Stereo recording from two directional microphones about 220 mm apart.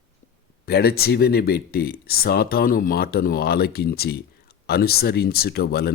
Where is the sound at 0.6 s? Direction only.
45° left (ahead or behind).